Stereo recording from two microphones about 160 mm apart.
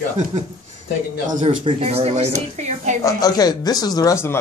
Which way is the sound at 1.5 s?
35° right (ahead or behind).